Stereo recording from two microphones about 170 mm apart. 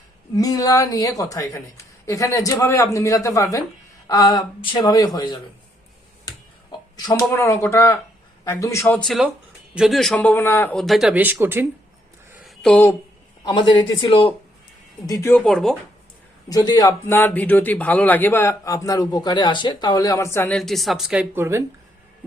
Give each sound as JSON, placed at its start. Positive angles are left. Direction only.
{"t": 0.3, "sound": "speech", "side_deg": 20}
{"t": 6.2, "sound": "a sound", "side_deg": 25}
{"t": 8.4, "sound": "speech", "side_deg": 20}
{"t": 9.0, "sound": "a man's voice", "side_deg": 0}
{"t": 12.3, "sound": "a sound", "side_deg": 0}
{"t": 13.4, "sound": "speech", "side_deg": 25}
{"t": 15.0, "sound": "speech", "side_deg": 20}
{"t": 15.4, "sound": "a man's voice", "side_deg": 0}
{"t": 16.5, "sound": "speech", "side_deg": 20}
{"t": 20.6, "sound": "a man's voice", "side_deg": 0}